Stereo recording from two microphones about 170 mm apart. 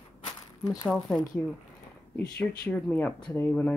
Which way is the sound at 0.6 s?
20° left (ahead or behind).